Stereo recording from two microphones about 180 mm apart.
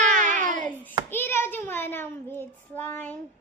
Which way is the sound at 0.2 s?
45° right (ahead or behind).